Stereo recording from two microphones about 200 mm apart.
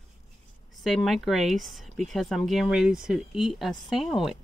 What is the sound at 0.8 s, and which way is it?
Speech, centre (ahead or behind).